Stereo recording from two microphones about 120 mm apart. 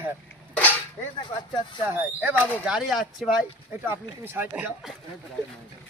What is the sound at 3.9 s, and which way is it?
Speech, 20° right (ahead or behind).